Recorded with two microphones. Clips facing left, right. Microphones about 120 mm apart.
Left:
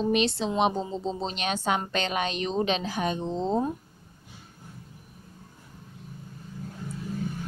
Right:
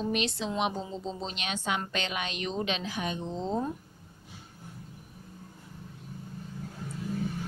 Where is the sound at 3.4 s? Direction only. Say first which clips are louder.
Left 4 dB; 25° left (ahead or behind).